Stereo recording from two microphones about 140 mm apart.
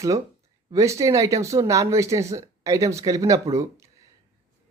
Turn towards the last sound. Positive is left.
turn(degrees=-20)  # may be behind; listen again after turning